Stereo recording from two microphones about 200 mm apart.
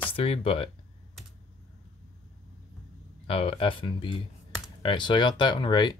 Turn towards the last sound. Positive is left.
turn(degrees=20)  # may be behind; listen again after turning